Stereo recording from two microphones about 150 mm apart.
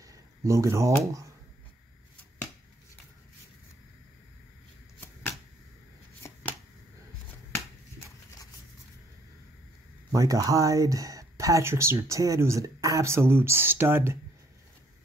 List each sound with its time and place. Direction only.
0.0 s speech: 20° right (ahead or behind)
10.1 s speech: 20° right (ahead or behind)